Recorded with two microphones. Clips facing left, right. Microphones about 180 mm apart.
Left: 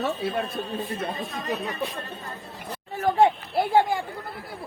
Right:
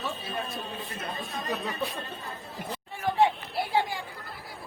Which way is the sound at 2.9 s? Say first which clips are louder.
Left 5 dB; 45° left (ahead or behind).